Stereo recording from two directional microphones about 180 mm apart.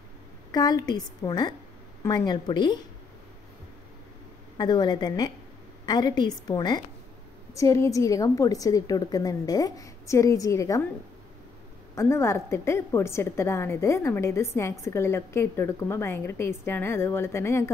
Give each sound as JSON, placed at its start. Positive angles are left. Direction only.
{"t": 0.5, "sound": "a woman's voice", "side_deg": 20}
{"t": 4.6, "sound": "a woman's voice", "side_deg": 25}
{"t": 11.9, "sound": "a woman's voice", "side_deg": 15}